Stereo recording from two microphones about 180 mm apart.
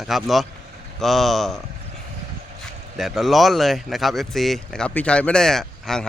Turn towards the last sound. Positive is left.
turn(degrees=0)  # may be behind; listen again after turning